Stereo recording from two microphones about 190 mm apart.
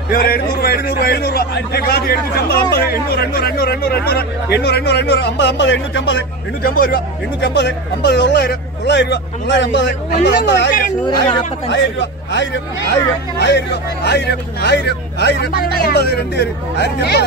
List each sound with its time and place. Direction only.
0.1 s a man's voice: 50° left (ahead or behind)